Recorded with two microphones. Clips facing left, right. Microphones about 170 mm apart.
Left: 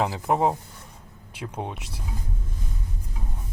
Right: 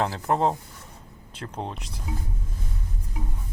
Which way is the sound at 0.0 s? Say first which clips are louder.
Left 1 dB; 10° left (ahead or behind).